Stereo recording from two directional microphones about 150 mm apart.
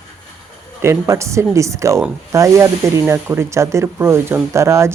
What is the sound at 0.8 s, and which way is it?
Speech, 20° right (ahead or behind).